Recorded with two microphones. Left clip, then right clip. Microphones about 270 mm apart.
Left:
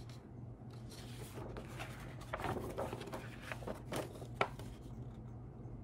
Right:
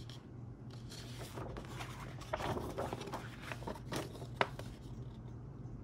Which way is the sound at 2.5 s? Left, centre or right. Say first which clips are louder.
Right 1 dB; centre.